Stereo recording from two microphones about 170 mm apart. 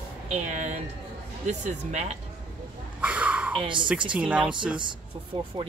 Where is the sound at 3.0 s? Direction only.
10° right (ahead or behind).